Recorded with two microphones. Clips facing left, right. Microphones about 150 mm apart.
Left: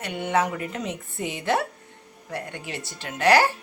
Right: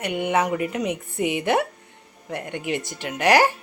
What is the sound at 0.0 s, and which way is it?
A woman's voice, 15° right (ahead or behind).